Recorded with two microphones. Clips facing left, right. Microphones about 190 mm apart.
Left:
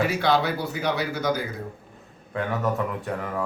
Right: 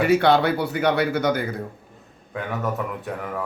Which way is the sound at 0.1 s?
60° right (ahead or behind).